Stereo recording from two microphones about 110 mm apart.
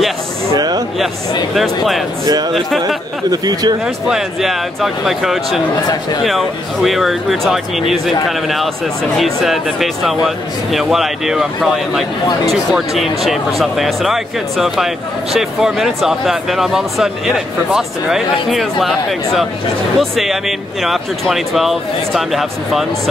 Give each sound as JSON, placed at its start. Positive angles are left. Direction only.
{"t": 0.6, "sound": "a sound", "side_deg": -35}
{"t": 1.5, "sound": "speech", "side_deg": 0}
{"t": 3.3, "sound": "speech", "side_deg": -40}
{"t": 3.8, "sound": "speech", "side_deg": -5}